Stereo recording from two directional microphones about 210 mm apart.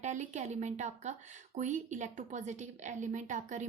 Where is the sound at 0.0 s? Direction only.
35° right (ahead or behind).